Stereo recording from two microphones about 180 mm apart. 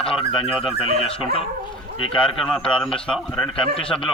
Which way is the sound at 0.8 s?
30° left (ahead or behind).